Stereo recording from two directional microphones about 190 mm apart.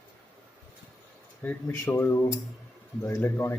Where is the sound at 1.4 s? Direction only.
10° left (ahead or behind).